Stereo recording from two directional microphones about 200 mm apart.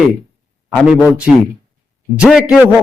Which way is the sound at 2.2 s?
5° right (ahead or behind).